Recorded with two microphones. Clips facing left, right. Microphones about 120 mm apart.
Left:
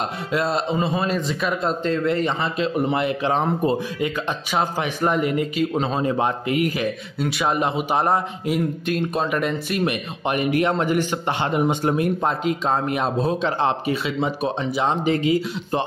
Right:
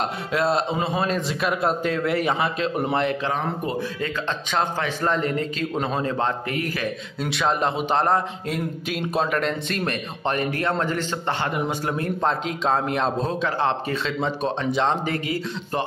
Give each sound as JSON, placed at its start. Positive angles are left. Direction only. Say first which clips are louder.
{"t": 0.3, "sound": "speech", "louder": "even", "side_deg": 0}
{"t": 2.9, "sound": "speech", "louder": "left 1 dB", "side_deg": 5}
{"t": 3.3, "sound": "speech", "louder": "left 5 dB", "side_deg": 25}
{"t": 4.0, "sound": "speech", "louder": "left 3 dB", "side_deg": 10}
{"t": 7.2, "sound": "speech", "louder": "left 1 dB", "side_deg": 5}
{"t": 8.8, "sound": "speech", "louder": "left 2 dB", "side_deg": -5}
{"t": 13.4, "sound": "speech", "louder": "left 2 dB", "side_deg": 20}
{"t": 15.0, "sound": "speech", "louder": "left 6 dB", "side_deg": 20}